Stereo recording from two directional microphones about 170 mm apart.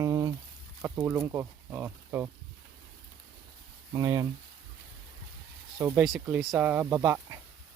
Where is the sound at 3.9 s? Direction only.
20° right (ahead or behind).